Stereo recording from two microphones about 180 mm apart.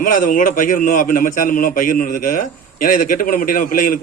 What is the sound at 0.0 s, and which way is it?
A man's voice, 50° left (ahead or behind).